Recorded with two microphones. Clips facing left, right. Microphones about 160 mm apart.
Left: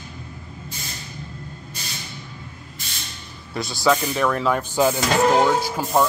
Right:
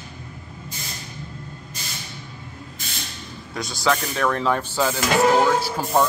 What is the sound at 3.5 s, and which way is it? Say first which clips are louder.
Speech: left 3 dB; 5° left (ahead or behind).